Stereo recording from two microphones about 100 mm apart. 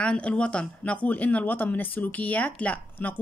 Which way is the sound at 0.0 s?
10° left (ahead or behind).